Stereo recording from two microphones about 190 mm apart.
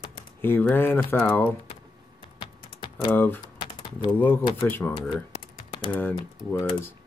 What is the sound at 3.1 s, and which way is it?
Speech, 10° left (ahead or behind).